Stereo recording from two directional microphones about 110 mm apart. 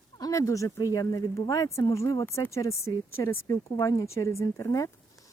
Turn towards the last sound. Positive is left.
turn(degrees=30)  # may be behind; listen again after turning